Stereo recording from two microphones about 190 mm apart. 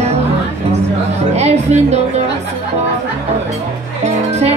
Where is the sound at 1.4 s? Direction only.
35° right (ahead or behind).